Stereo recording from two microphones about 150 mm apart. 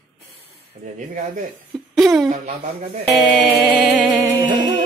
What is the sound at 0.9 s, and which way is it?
Speech, 55° right (ahead or behind).